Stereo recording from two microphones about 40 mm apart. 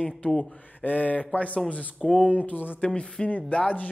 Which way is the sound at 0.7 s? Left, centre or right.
Left.